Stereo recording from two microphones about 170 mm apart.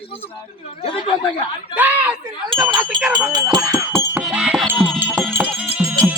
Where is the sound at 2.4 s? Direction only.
25° right (ahead or behind).